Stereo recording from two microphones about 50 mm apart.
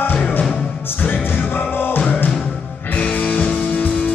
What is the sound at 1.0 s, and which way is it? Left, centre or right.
Music, left.